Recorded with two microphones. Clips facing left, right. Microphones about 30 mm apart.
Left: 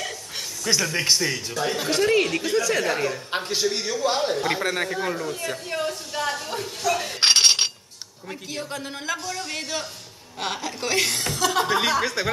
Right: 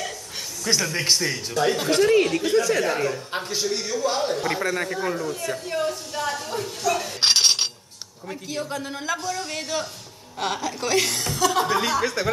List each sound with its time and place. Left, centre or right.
0.7 s speech: centre
3.3 s a man's voice: left